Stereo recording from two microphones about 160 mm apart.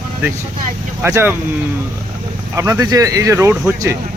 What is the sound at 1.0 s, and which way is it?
Speech, 15° right (ahead or behind).